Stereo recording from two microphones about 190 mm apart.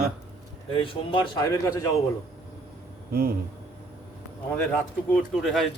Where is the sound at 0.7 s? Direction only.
25° left (ahead or behind).